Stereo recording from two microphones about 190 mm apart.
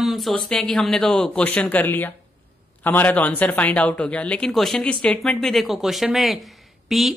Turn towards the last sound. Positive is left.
turn(degrees=0)  # may be behind; listen again after turning